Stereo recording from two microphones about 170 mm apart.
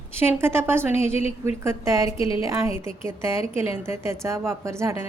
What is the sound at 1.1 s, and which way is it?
Speech, 40° left (ahead or behind).